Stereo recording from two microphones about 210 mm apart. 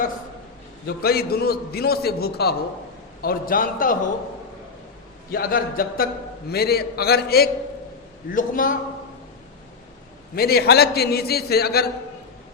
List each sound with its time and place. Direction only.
0.9 s a man's voice: 45° left (ahead or behind)
5.3 s a man's voice: 45° left (ahead or behind)
10.3 s a man's voice: 45° left (ahead or behind)